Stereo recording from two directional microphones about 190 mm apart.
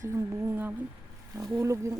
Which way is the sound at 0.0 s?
15° right (ahead or behind).